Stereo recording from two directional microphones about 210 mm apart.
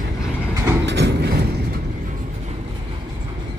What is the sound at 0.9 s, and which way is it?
Clip-clop, 55° right (ahead or behind).